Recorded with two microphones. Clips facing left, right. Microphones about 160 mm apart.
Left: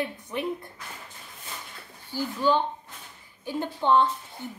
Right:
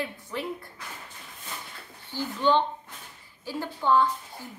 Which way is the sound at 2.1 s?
10° left (ahead or behind).